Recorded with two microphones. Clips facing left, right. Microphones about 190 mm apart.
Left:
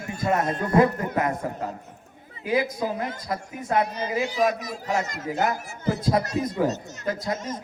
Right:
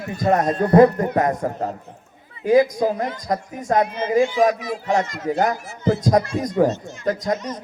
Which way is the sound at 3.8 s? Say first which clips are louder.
Right 8 dB; 35° left (ahead or behind).